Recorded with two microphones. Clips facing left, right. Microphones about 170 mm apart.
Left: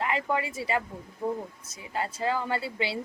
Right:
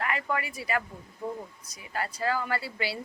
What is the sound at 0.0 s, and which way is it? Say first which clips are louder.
Speech: left 3 dB; 20° left (ahead or behind).